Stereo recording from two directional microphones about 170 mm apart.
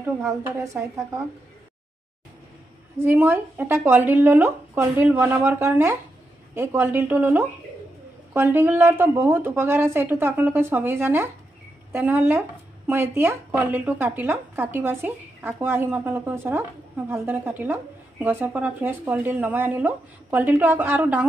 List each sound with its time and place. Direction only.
0.0 s speech: 10° right (ahead or behind)
3.0 s speech: 10° right (ahead or behind)